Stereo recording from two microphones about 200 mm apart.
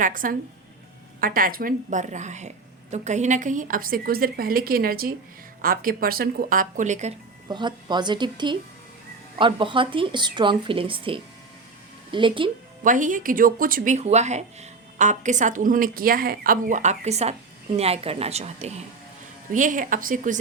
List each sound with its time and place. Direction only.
0.0 s a woman's voice: 45° right (ahead or behind)
7.4 s speech: 20° right (ahead or behind)
12.8 s speech: 40° right (ahead or behind)